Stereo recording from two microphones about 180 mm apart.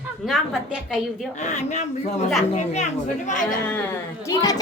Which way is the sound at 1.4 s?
40° left (ahead or behind).